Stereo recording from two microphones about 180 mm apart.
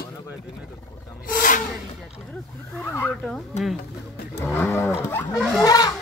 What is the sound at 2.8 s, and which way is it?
Cattle, 15° left (ahead or behind).